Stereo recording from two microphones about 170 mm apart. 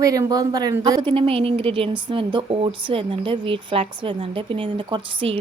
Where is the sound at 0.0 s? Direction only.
20° right (ahead or behind).